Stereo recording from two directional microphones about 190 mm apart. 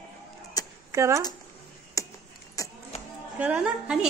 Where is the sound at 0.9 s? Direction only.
15° right (ahead or behind).